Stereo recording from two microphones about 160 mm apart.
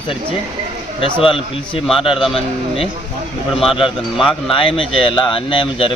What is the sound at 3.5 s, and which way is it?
Speech, centre (ahead or behind).